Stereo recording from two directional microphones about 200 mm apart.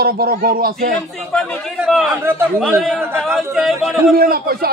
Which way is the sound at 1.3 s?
Centre (ahead or behind).